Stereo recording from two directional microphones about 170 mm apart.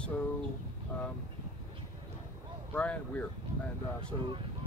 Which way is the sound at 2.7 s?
10° left (ahead or behind).